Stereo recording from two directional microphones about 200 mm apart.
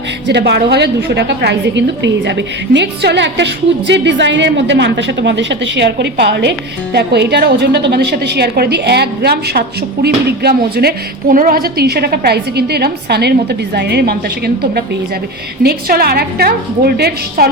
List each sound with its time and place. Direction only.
0.3 s a woman's voice: 55° right (ahead or behind)